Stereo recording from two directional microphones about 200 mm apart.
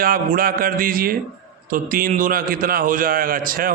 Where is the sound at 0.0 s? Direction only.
45° right (ahead or behind).